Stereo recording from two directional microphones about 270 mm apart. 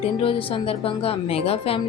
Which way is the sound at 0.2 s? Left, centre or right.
Centre.